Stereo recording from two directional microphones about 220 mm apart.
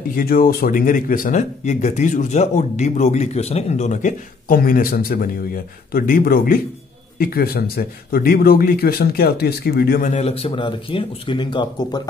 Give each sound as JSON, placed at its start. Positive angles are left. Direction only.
{"t": 0.1, "sound": "speech", "side_deg": 40}